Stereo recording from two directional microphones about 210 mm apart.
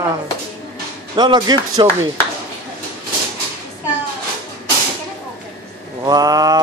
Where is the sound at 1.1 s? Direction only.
20° right (ahead or behind).